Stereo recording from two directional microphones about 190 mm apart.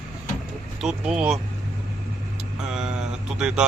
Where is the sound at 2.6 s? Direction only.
5° right (ahead or behind).